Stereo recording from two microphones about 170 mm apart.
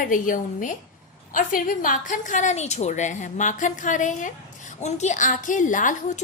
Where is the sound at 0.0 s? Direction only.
50° left (ahead or behind).